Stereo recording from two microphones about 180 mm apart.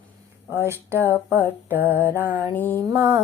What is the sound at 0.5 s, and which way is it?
Speech, 15° right (ahead or behind).